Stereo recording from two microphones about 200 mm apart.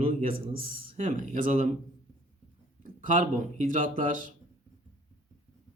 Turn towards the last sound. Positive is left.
turn(degrees=-40)  # may be behind; listen again after turning